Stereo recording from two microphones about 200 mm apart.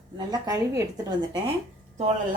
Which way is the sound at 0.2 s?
20° right (ahead or behind).